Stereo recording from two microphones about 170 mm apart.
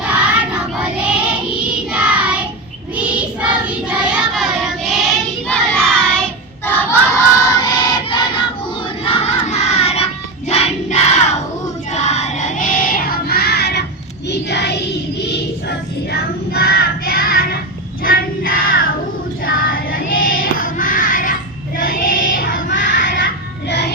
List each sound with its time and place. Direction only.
0.1 s child singing: 5° right (ahead or behind); by 7.0 s 10° left (ahead or behind)
7.5 s a sound: 25° left (ahead or behind)
9.0 s crowd: 35° left (ahead or behind)
11.9 s child singing: 40° left (ahead or behind); by 14.8 s 85° left
16.1 s child singing: 65° left (ahead or behind); by 23.2 s 50° left (ahead or behind)
23.6 s music: 80° left